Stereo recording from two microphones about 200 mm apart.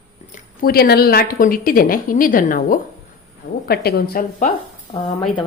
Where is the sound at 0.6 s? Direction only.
50° left (ahead or behind).